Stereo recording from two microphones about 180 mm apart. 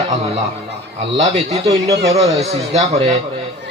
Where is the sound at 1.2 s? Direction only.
35° right (ahead or behind).